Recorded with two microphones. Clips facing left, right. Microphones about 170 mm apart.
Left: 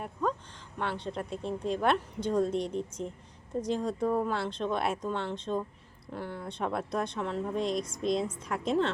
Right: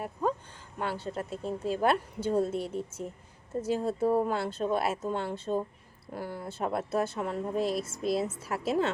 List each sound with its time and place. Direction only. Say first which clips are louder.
0.8 s speech: right 1 dB; 5° right (ahead or behind)
4.0 s speech: right 3 dB; 30° right (ahead or behind)
4.3 s speech: right 2 dB; 10° right (ahead or behind)